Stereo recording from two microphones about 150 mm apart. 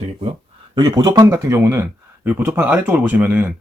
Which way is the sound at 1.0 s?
20° right (ahead or behind).